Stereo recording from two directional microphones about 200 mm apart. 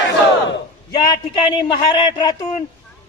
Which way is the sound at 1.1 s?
20° left (ahead or behind).